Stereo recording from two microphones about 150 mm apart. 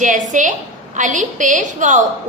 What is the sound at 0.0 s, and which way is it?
A woman's voice, 55° right (ahead or behind).